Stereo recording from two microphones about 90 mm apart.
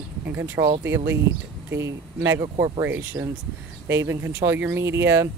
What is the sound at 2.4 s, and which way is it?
Speech, 40° right (ahead or behind).